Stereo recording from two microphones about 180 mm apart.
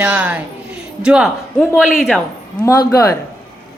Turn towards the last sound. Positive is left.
turn(degrees=20)  # may be behind; listen again after turning